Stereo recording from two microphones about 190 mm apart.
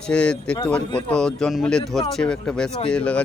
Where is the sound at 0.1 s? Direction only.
5° left (ahead or behind).